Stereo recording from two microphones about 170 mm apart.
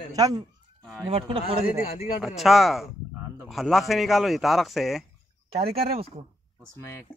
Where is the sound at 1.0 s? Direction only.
35° right (ahead or behind).